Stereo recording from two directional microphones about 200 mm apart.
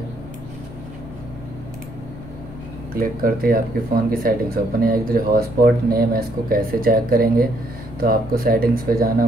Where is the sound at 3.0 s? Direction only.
45° right (ahead or behind).